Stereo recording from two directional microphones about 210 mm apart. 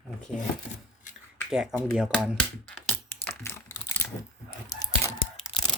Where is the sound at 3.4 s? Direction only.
10° left (ahead or behind).